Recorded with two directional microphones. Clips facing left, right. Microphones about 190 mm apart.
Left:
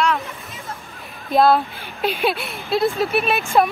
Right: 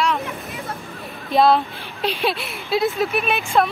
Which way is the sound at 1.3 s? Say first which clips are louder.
Left 1 dB; centre (ahead or behind).